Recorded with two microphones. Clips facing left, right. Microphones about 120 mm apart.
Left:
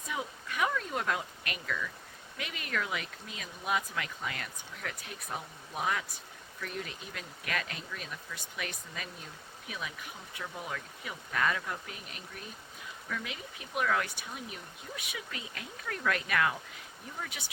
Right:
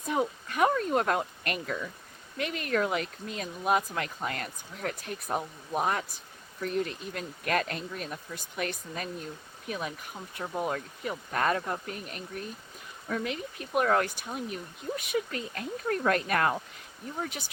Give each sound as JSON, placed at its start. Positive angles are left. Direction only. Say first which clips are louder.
{"t": 0.1, "sound": "speech", "louder": "right 8 dB", "side_deg": -45}